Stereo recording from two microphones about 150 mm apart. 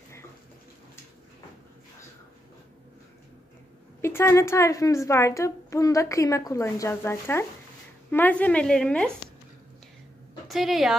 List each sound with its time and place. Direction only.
4.0 s a woman's voice: 20° left (ahead or behind)
10.5 s a woman's voice: centre (ahead or behind)